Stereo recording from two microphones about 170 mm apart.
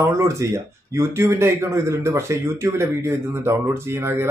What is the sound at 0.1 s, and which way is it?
Speech, 15° right (ahead or behind).